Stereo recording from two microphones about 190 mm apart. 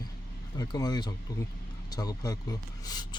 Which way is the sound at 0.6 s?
20° left (ahead or behind).